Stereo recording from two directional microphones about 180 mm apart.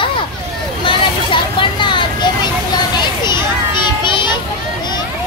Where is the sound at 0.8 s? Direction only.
25° left (ahead or behind).